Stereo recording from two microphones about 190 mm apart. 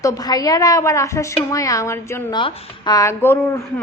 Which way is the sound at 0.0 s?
20° left (ahead or behind).